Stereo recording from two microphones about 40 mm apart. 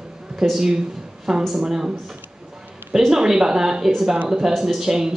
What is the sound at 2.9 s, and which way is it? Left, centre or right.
Speech, centre.